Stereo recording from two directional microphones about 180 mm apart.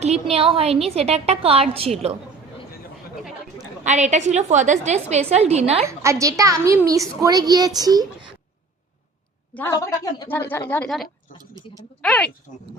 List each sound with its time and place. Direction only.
0.0 s a woman's voice: 35° right (ahead or behind)
3.8 s a woman's voice: 40° right (ahead or behind)
5.9 s a woman's voice: 15° right (ahead or behind)
9.6 s a woman's voice: 15° left (ahead or behind)
11.3 s tick-tock: 50° left (ahead or behind)
12.0 s speech: 5° left (ahead or behind)